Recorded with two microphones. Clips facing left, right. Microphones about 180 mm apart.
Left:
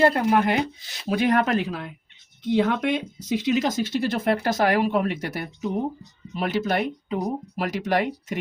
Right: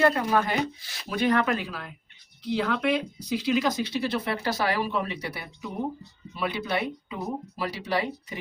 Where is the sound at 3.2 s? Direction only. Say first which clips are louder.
Left 4 dB; 45° left (ahead or behind).